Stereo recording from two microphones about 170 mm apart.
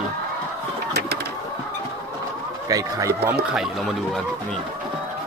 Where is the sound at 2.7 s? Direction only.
20° right (ahead or behind).